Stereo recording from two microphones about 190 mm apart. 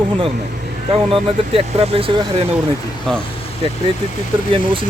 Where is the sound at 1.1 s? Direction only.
30° right (ahead or behind).